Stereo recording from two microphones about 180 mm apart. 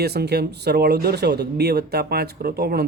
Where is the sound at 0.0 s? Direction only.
65° right (ahead or behind).